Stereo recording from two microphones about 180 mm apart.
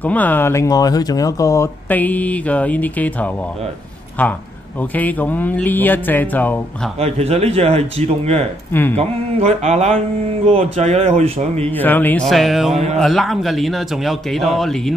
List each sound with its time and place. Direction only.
0.0 s speech: 10° left (ahead or behind)
7.0 s speech: 35° right (ahead or behind)
11.7 s speech: 10° left (ahead or behind)